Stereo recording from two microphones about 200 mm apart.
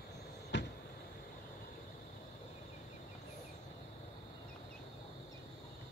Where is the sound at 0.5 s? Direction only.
60° left (ahead or behind).